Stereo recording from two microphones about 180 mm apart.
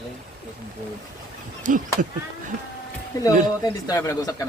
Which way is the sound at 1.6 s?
50° right (ahead or behind).